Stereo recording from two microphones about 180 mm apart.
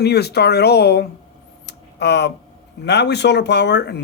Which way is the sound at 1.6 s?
70° left (ahead or behind).